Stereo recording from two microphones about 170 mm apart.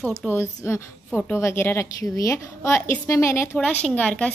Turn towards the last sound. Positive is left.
turn(degrees=5)  # may be behind; listen again after turning